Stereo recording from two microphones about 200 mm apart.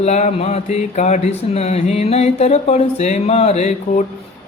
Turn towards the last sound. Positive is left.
turn(degrees=35)  # may be behind; listen again after turning